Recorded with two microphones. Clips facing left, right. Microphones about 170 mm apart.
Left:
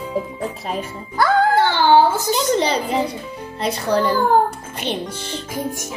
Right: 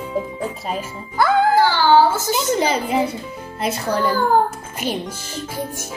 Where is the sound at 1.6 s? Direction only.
20° left (ahead or behind).